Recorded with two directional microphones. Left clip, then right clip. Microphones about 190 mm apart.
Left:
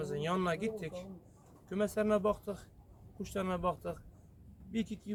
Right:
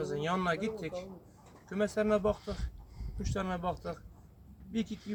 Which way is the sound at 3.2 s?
30° left (ahead or behind).